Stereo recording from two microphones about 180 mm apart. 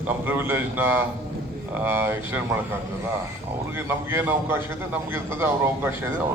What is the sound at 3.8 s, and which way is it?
A man's voice, 15° right (ahead or behind).